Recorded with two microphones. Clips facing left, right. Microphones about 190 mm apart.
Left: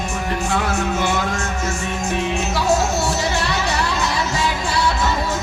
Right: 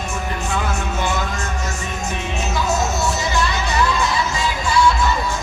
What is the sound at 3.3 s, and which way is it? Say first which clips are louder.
Music: even; 65° left (ahead or behind).